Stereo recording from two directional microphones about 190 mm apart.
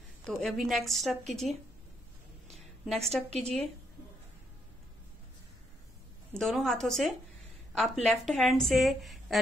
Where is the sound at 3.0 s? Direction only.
35° right (ahead or behind).